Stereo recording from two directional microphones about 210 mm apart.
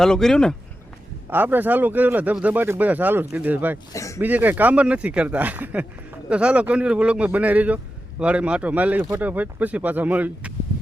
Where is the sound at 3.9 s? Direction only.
15° left (ahead or behind).